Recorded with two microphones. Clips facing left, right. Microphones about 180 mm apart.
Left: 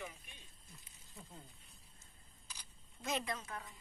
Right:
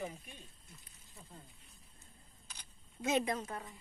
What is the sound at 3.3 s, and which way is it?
Speech, 35° right (ahead or behind).